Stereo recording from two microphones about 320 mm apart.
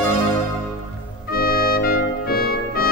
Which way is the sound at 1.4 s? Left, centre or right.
Left.